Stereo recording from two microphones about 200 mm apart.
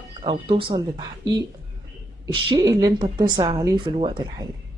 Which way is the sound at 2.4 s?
20° right (ahead or behind).